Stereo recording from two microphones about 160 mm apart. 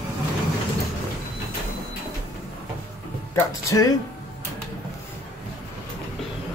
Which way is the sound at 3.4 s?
20° left (ahead or behind).